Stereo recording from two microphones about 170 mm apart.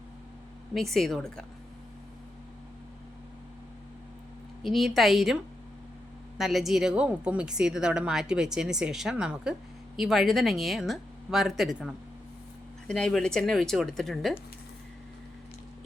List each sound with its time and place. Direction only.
0.7 s a woman's voice: centre (ahead or behind)
4.6 s a woman's voice: centre (ahead or behind)